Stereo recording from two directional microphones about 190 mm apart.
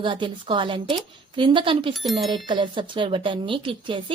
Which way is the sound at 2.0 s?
Centre (ahead or behind).